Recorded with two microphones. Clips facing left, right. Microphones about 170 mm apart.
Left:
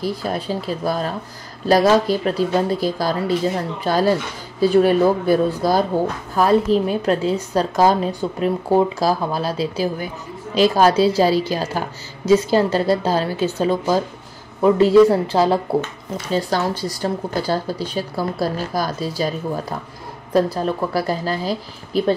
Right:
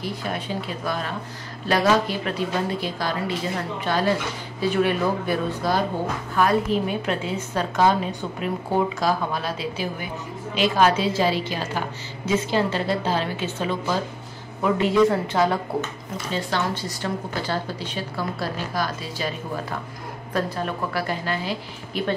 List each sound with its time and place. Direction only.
0.0 s a woman's voice: 35° left (ahead or behind)